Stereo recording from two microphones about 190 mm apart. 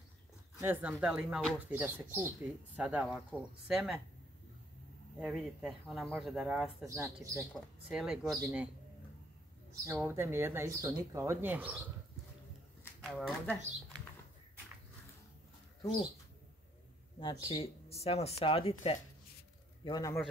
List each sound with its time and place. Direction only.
0.6 s speech: 10° right (ahead or behind)
5.2 s speech: 5° right (ahead or behind)
6.9 s speech: 15° right (ahead or behind)
7.5 s speech: 5° right (ahead or behind)
9.9 s speech: 10° right (ahead or behind)
13.0 s speech: centre (ahead or behind)
17.2 s speech: 25° left (ahead or behind)